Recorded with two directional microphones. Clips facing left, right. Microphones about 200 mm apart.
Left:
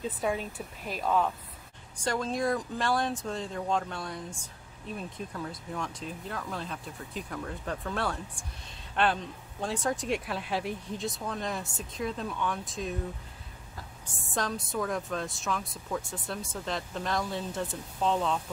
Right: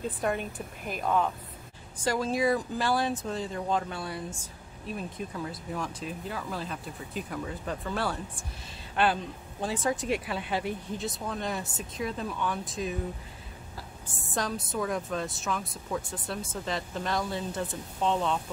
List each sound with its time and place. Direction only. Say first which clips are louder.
0.4 s a woman's voice: right 1 dB; 50° right (ahead or behind)
1.0 s speech: even; centre (ahead or behind)
14.3 s speech: even; centre (ahead or behind)